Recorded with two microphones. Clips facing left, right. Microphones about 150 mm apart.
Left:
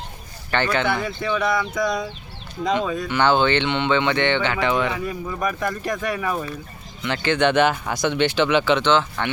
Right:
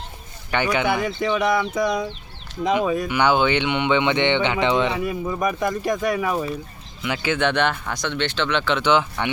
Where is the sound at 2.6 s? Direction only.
15° right (ahead or behind); by 8.8 s 5° left (ahead or behind).